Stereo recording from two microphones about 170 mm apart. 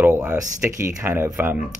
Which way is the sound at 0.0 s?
15° right (ahead or behind).